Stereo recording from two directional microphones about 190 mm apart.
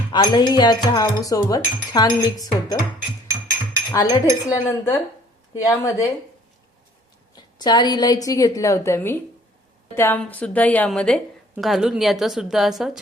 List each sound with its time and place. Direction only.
0.1 s speech: 25° left (ahead or behind)
4.1 s a woman's voice: 15° left (ahead or behind)
7.3 s a woman's voice: 20° left (ahead or behind); by 13.0 s centre (ahead or behind)